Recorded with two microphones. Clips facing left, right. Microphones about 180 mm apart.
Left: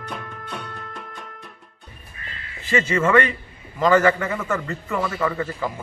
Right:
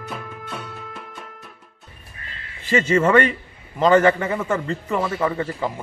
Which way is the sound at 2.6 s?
30° right (ahead or behind).